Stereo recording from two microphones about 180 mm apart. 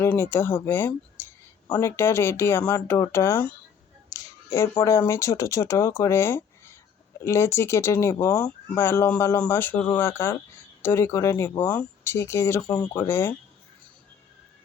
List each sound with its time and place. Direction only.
0.0 s speech: 15° left (ahead or behind)
4.1 s finger snapping: 20° left (ahead or behind)
4.8 s speech: 15° left (ahead or behind)